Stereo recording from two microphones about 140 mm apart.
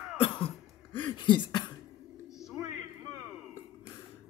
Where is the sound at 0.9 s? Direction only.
35° left (ahead or behind).